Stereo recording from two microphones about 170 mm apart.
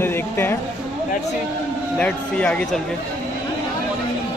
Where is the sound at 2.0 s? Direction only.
5° left (ahead or behind).